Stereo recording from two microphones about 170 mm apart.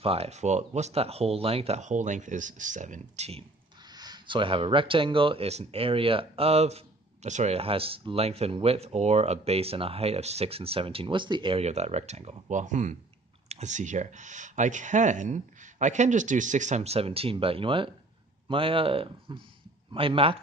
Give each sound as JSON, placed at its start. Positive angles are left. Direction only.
{"t": 0.0, "sound": "speech", "side_deg": -35}
{"t": 3.9, "sound": "speech", "side_deg": -25}